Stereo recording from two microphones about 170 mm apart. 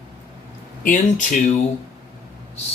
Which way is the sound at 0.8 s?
50° left (ahead or behind).